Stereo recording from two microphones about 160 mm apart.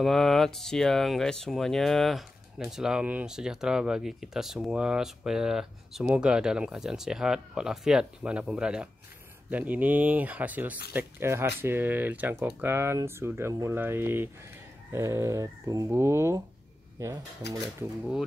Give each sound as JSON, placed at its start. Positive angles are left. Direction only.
{"t": 0.0, "sound": "speech", "side_deg": 0}
{"t": 17.4, "sound": "speech", "side_deg": 90}